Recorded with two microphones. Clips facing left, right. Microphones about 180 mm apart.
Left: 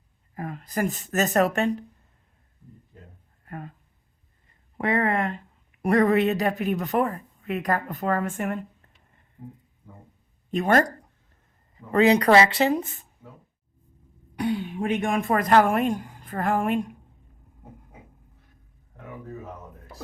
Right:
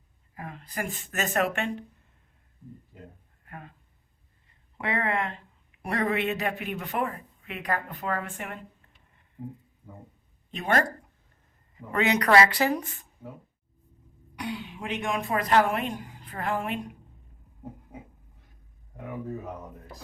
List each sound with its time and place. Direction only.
0.3 s speech: 45° left (ahead or behind)
2.9 s speech: 10° right (ahead or behind)
3.4 s speech: 40° left (ahead or behind)
4.8 s speech: 45° left (ahead or behind)
9.4 s speech: 10° right (ahead or behind)
10.5 s speech: 45° left (ahead or behind); by 13.1 s 25° left (ahead or behind)
14.3 s speech: 50° left (ahead or behind)